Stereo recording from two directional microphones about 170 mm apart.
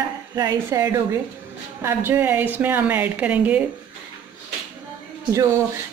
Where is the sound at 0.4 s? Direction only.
20° right (ahead or behind).